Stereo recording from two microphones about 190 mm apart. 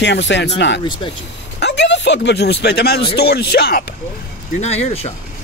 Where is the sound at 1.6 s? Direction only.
65° left (ahead or behind).